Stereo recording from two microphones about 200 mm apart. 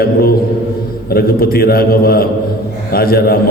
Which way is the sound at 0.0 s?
50° left (ahead or behind).